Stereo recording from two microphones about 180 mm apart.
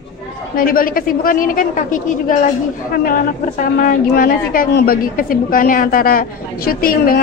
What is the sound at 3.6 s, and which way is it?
A woman's voice, 50° left (ahead or behind).